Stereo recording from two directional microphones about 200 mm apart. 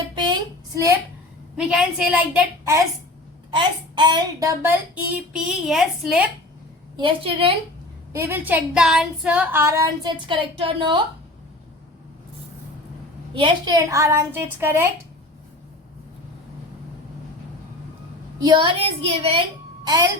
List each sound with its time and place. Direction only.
1.5 s speech: 5° right (ahead or behind)
3.5 s speech: 25° right (ahead or behind); by 6.2 s centre (ahead or behind)
6.9 s a woman's voice: 25° right (ahead or behind)
8.1 s speech: 10° right (ahead or behind)
13.3 s speech: 20° right (ahead or behind)
18.4 s a woman's voice: 25° right (ahead or behind)